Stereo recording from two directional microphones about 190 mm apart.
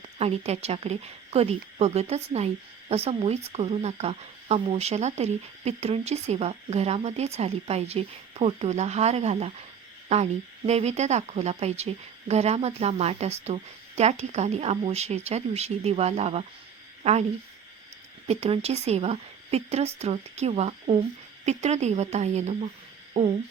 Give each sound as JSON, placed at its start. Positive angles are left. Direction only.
{"t": 0.2, "sound": "speech", "side_deg": -35}
{"t": 18.3, "sound": "speech", "side_deg": -35}